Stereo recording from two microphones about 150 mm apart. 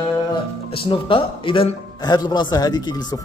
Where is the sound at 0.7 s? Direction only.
35° left (ahead or behind).